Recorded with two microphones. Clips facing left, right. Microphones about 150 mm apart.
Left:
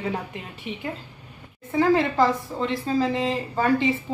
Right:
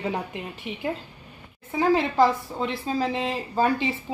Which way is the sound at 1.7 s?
15° right (ahead or behind).